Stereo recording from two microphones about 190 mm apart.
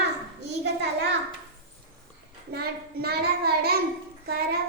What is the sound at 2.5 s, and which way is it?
Child singing, 55° right (ahead or behind).